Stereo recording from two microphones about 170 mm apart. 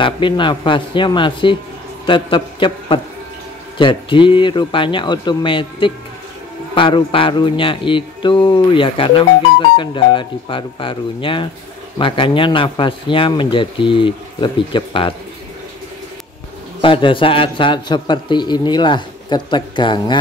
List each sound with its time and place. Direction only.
0.0 s a man's voice: 30° left (ahead or behind)
16.8 s a man's voice: 30° left (ahead or behind)